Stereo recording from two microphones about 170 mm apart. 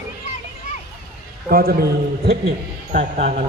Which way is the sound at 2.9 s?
45° right (ahead or behind).